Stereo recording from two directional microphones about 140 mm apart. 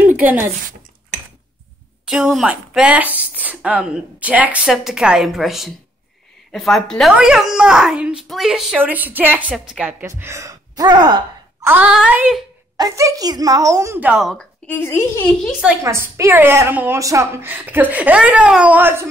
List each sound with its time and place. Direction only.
0.2 s speech: 10° right (ahead or behind)
2.0 s speech: 5° right (ahead or behind); by 11.1 s 30° right (ahead or behind)
11.6 s a sound: 15° right (ahead or behind)
11.9 s speech: 10° right (ahead or behind)
12.7 s speech: 25° right (ahead or behind)
13.9 s speech: 5° right (ahead or behind)
14.7 s a woman's voice: 15° left (ahead or behind)
15.8 s speech: 20° right (ahead or behind)